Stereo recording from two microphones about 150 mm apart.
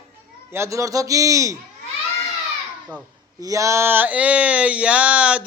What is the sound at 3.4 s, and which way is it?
Speech, 20° right (ahead or behind).